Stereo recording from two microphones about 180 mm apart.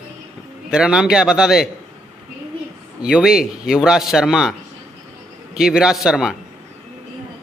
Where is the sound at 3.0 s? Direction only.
5° right (ahead or behind).